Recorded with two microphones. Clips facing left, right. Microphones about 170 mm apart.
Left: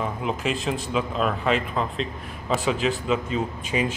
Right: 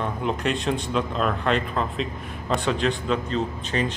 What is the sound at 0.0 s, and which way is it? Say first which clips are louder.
Speech: right 1 dB; centre (ahead or behind).